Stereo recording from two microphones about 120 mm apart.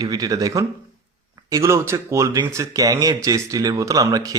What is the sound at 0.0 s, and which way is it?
Speech, 35° right (ahead or behind).